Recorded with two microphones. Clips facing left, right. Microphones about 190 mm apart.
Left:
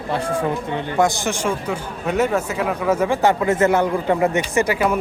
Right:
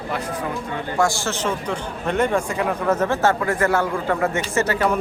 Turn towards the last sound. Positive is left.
turn(degrees=10)  # may be behind; listen again after turning